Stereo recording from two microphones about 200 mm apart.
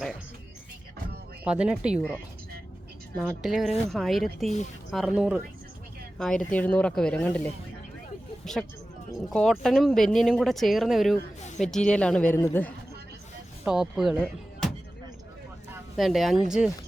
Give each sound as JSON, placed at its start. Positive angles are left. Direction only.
{"t": 1.5, "sound": "speech", "side_deg": -5}
{"t": 3.2, "sound": "speech", "side_deg": 0}
{"t": 9.3, "sound": "speech", "side_deg": 0}
{"t": 13.7, "sound": "speech", "side_deg": -5}
{"t": 16.0, "sound": "speech", "side_deg": 0}